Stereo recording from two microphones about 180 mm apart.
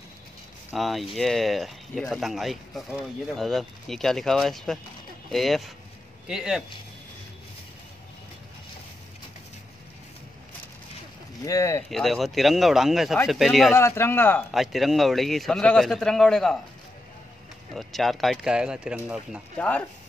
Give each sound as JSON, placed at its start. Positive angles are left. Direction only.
{"t": 0.7, "sound": "speech", "side_deg": 0}
{"t": 11.4, "sound": "speech", "side_deg": 15}
{"t": 11.9, "sound": "speech", "side_deg": 0}
{"t": 13.7, "sound": "speech", "side_deg": 15}
{"t": 14.5, "sound": "speech", "side_deg": 0}
{"t": 17.7, "sound": "speech", "side_deg": 0}